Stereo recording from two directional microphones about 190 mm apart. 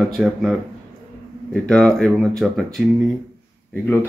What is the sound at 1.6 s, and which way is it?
Speech, 5° left (ahead or behind).